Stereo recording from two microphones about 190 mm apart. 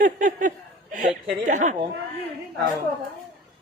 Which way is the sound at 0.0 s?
45° right (ahead or behind).